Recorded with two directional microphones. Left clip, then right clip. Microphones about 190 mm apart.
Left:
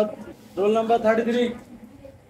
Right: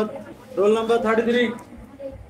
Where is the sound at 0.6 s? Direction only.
15° right (ahead or behind).